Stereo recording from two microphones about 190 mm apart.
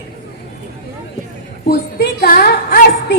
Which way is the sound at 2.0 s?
55° left (ahead or behind).